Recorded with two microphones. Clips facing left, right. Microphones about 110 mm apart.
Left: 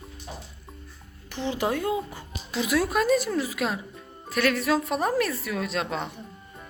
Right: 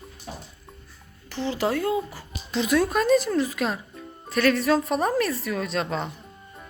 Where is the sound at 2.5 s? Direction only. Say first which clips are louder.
Right 2 dB; 5° left (ahead or behind).